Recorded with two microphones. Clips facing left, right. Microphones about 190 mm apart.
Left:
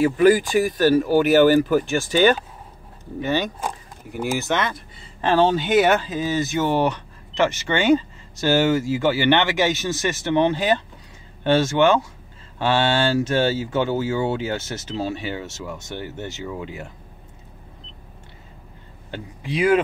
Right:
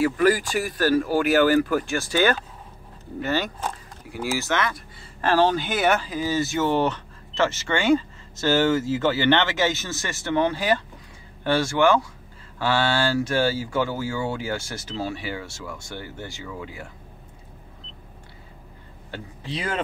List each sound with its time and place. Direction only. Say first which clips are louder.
0.0 s speech: left 4 dB; 20° left (ahead or behind)
19.0 s speech: left 3 dB; 15° left (ahead or behind)